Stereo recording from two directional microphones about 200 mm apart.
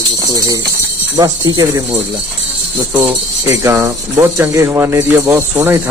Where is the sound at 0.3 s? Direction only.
20° right (ahead or behind).